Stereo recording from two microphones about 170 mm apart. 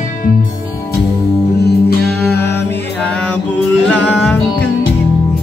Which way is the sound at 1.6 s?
75° left (ahead or behind).